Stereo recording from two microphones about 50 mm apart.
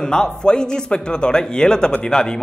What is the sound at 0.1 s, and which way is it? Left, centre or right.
A man's voice, centre.